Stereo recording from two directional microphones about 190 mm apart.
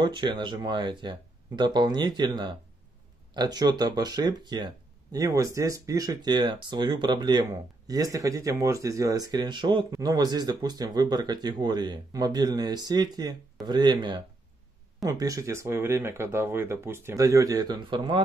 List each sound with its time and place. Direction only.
0.0 s speech: 25° right (ahead or behind)